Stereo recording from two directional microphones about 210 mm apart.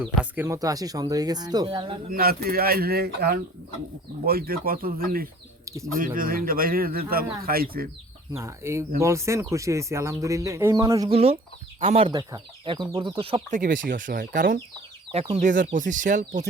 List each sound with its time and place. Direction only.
0.0 s speech: 5° right (ahead or behind); by 2.0 s 25° right (ahead or behind)
2.0 s speech: 45° right (ahead or behind)
8.3 s speech: 15° right (ahead or behind)
11.1 s speech: 30° right (ahead or behind)
13.8 s speech: 40° right (ahead or behind)
15.1 s speech: 30° right (ahead or behind)